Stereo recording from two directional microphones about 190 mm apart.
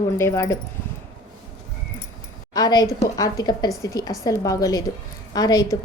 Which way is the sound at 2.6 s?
20° left (ahead or behind).